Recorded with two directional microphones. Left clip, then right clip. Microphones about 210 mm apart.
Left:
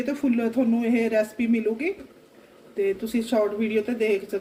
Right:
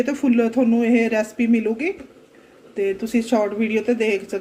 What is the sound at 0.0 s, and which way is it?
Speech, 25° right (ahead or behind).